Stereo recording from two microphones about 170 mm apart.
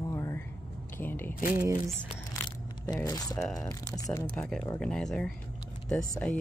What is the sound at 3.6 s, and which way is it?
Speech, 20° left (ahead or behind).